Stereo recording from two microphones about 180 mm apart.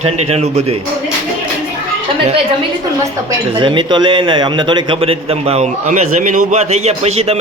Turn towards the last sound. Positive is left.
turn(degrees=-35)  # may be behind; listen again after turning